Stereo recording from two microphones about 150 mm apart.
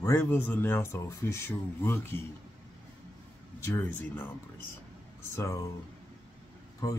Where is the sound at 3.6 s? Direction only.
20° left (ahead or behind).